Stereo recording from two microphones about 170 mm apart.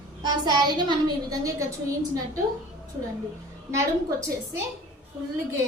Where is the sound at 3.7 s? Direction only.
15° right (ahead or behind).